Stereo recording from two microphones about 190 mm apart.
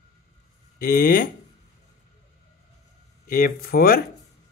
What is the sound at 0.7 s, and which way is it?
Speech, 50° left (ahead or behind).